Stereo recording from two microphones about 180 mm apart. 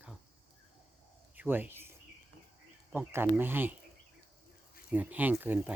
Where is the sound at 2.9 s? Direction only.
10° right (ahead or behind).